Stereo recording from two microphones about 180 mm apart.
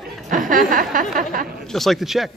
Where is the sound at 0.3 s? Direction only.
50° right (ahead or behind).